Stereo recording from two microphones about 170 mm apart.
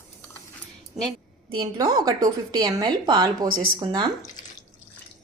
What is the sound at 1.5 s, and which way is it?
A woman's voice, 25° right (ahead or behind).